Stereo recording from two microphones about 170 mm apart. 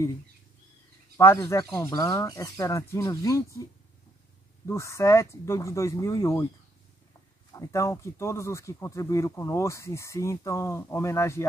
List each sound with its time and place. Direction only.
1.1 s speech: 15° left (ahead or behind)
4.6 s speech: 15° left (ahead or behind)
7.5 s speech: 20° left (ahead or behind)